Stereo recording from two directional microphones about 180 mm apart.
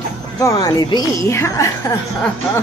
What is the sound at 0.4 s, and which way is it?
A woman's voice, 20° left (ahead or behind).